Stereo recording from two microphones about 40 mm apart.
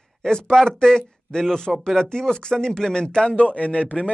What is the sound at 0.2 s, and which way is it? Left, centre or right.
A man's voice, centre.